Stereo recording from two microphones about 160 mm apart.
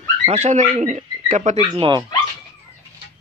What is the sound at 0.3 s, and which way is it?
Speech, 45° right (ahead or behind).